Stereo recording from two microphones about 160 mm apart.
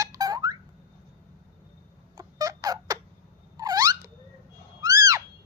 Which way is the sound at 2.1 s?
20° right (ahead or behind).